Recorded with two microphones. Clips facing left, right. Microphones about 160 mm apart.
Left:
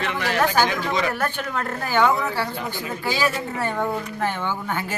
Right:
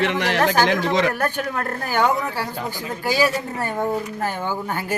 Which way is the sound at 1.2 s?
40° right (ahead or behind).